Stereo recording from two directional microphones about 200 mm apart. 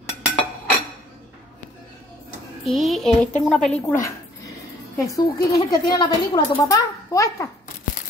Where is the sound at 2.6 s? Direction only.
Centre (ahead or behind).